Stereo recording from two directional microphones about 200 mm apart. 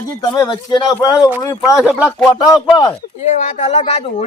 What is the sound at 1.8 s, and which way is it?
Speech, 5° right (ahead or behind).